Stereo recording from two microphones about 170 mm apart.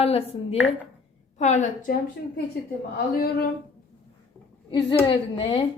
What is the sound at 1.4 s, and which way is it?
Speech, 45° left (ahead or behind).